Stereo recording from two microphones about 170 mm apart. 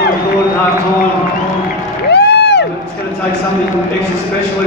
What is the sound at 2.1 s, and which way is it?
Crowd, 80° left.